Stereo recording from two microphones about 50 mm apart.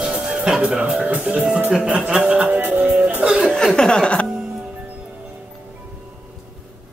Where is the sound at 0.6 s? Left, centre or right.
Right.